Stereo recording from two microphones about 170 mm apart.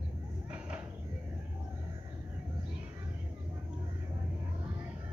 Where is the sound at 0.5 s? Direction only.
10° right (ahead or behind).